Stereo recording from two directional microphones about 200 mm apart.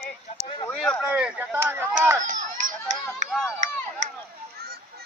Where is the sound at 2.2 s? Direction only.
40° right (ahead or behind).